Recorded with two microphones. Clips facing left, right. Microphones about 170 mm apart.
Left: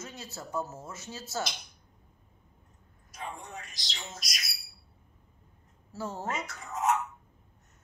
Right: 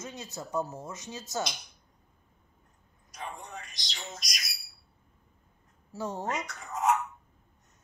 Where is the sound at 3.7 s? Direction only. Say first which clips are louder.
Right 1 dB; 5° left (ahead or behind).